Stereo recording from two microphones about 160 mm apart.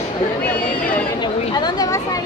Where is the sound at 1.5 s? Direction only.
25° left (ahead or behind).